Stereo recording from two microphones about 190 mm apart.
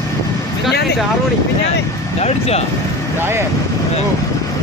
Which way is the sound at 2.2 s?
35° left (ahead or behind).